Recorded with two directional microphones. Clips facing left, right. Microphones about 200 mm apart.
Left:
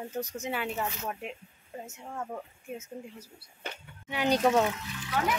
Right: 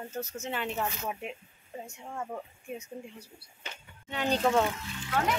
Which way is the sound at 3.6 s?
55° left (ahead or behind).